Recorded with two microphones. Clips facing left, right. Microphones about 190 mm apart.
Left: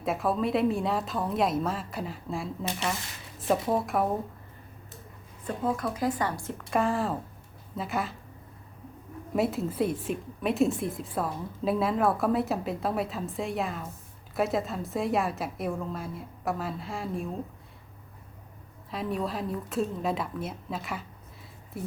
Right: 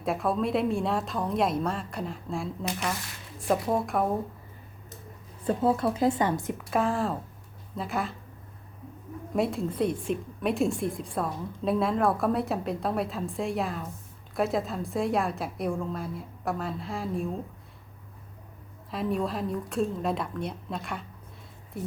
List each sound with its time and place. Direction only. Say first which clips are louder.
0.0 s a woman's voice: even; centre (ahead or behind)
5.5 s speech: right 5 dB; 30° right (ahead or behind)
6.7 s a woman's voice: even; centre (ahead or behind)
9.3 s a woman's voice: even; 5° left (ahead or behind)
18.9 s a woman's voice: right 2 dB; centre (ahead or behind)